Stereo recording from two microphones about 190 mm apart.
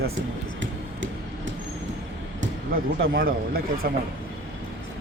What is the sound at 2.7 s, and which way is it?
Speech, 50° right (ahead or behind).